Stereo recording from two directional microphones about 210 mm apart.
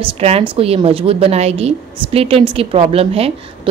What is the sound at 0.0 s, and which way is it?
A woman's voice, 25° right (ahead or behind).